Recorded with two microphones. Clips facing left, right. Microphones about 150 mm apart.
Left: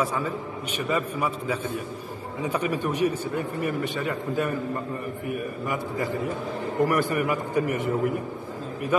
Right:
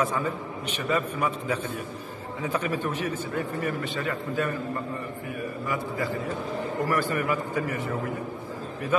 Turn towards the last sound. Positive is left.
turn(degrees=20)  # may be behind; listen again after turning